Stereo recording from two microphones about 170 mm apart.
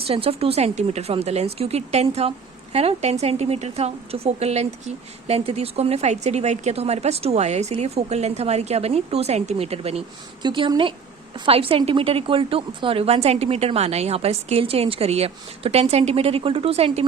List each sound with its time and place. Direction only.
0.1 s a woman's voice: 35° right (ahead or behind)
10.4 s a woman's voice: 25° right (ahead or behind)